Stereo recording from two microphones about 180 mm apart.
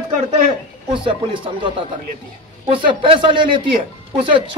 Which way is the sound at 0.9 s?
25° right (ahead or behind).